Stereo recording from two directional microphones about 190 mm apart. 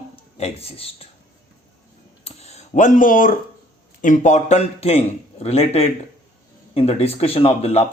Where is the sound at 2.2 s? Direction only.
35° left (ahead or behind).